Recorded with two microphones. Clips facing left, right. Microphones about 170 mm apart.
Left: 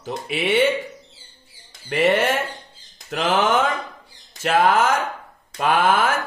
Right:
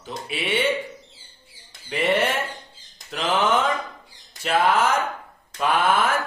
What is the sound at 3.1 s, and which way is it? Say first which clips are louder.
Mantra: left 2 dB; 90° left.